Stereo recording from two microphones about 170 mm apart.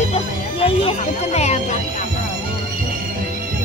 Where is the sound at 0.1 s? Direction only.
35° left (ahead or behind).